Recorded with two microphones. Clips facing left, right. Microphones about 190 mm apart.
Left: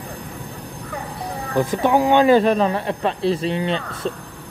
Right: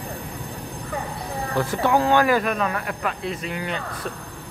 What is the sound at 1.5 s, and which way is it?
Speech, 15° left (ahead or behind).